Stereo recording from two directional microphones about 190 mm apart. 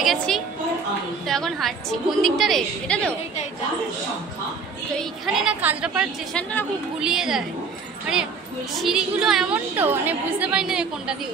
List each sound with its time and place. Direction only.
0.0 s a woman's voice: centre (ahead or behind)
4.9 s a woman's voice: centre (ahead or behind)
8.8 s a woman's voice: centre (ahead or behind)